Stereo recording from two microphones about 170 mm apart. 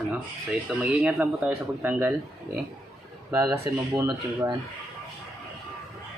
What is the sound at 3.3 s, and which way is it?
Speech, 20° right (ahead or behind).